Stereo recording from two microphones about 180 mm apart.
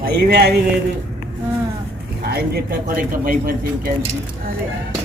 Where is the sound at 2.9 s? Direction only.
50° right (ahead or behind).